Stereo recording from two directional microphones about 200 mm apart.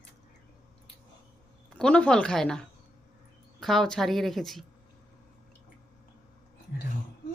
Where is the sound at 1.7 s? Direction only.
5° left (ahead or behind).